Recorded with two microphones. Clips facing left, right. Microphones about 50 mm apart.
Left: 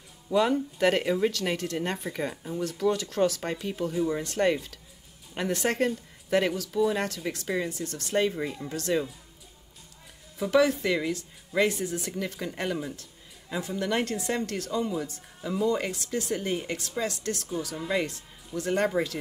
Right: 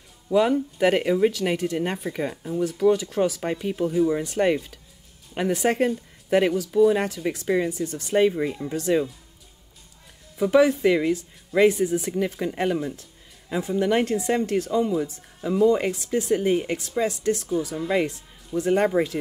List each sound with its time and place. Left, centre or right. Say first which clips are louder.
0.3 s speech: right 4 dB; centre
10.3 s speech: right 5 dB; centre